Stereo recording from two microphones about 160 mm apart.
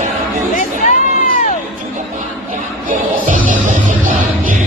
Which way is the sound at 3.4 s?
55° right (ahead or behind).